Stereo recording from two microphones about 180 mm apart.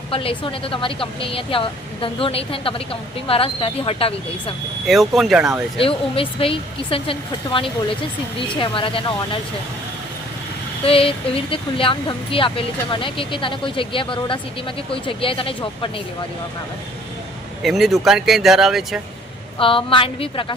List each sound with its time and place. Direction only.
0.1 s a woman's voice: 30° left (ahead or behind)
4.9 s speech: centre (ahead or behind)
5.8 s a woman's voice: 30° left (ahead or behind)
10.8 s speech: 30° left (ahead or behind)
17.6 s speech: centre (ahead or behind)
19.5 s speech: 30° left (ahead or behind)